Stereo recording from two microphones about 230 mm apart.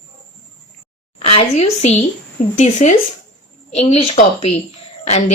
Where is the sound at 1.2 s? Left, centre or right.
Left.